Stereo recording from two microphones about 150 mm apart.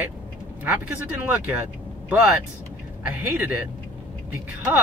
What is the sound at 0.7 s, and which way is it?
Speech, 10° right (ahead or behind).